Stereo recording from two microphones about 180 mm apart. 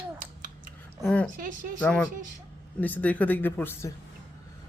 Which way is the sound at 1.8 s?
5° left (ahead or behind).